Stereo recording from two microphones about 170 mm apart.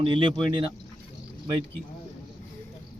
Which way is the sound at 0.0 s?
30° right (ahead or behind).